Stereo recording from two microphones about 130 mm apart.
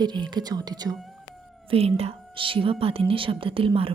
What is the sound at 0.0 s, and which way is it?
Speech, 35° right (ahead or behind).